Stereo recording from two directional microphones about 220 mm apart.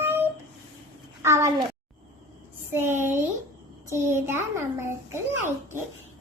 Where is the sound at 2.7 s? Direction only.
10° right (ahead or behind).